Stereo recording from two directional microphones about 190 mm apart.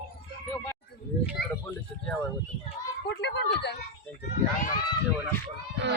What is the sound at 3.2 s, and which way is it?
Speech, 65° left (ahead or behind).